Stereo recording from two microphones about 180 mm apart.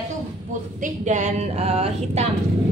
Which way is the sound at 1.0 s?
40° right (ahead or behind).